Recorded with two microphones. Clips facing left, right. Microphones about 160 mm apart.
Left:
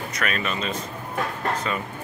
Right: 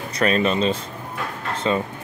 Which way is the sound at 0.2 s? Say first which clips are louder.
Right 9 dB; 30° right (ahead or behind).